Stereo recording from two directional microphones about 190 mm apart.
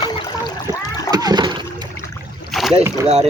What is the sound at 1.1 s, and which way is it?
Splash, 20° right (ahead or behind).